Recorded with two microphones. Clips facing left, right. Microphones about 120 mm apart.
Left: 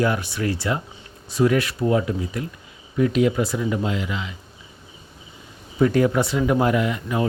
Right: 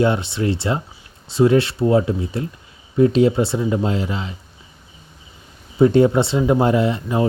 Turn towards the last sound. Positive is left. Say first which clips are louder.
# right 4 dB
turn(degrees=-30)  # may be behind; listen again after turning